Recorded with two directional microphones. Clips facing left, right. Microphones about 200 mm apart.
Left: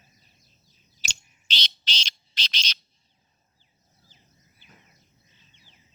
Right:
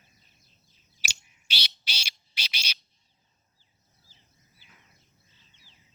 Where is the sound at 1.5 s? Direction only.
10° right (ahead or behind).